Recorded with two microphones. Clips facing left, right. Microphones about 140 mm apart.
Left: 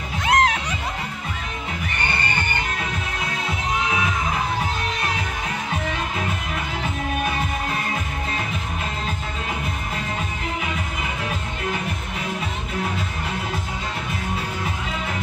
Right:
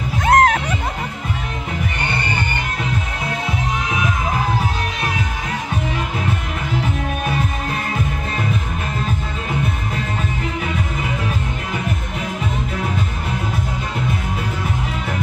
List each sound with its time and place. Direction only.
0.2 s music: 50° right (ahead or behind)